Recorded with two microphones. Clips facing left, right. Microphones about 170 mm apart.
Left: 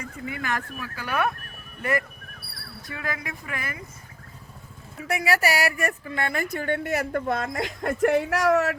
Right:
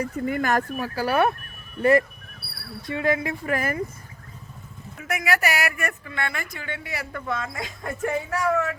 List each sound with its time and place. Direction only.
0.0 s speech: 45° right (ahead or behind); by 3.3 s 25° right (ahead or behind)
3.4 s speech: 45° right (ahead or behind)
5.0 s a woman's voice: 30° left (ahead or behind); by 8.8 s 75° left (ahead or behind)